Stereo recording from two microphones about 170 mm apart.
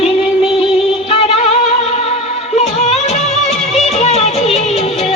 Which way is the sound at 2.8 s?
40° left (ahead or behind).